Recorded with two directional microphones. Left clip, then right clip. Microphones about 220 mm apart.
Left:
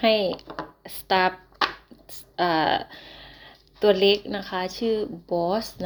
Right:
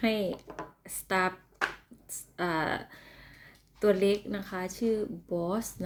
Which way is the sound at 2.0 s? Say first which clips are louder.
Left 9 dB; 20° right (ahead or behind).